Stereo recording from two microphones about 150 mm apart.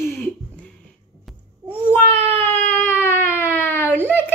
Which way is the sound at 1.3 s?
10° right (ahead or behind).